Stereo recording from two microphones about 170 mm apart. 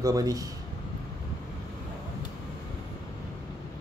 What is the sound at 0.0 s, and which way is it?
Speech, 20° right (ahead or behind).